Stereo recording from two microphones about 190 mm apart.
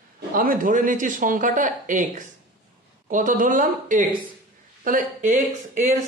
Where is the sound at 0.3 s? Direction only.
45° right (ahead or behind).